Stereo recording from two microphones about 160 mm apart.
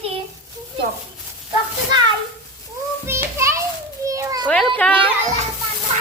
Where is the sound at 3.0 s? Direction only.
15° right (ahead or behind).